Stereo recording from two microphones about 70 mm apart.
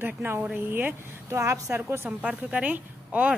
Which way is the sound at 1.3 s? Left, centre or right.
Right.